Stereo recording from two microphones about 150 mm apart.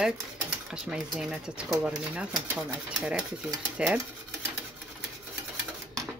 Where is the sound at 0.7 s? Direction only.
5° right (ahead or behind).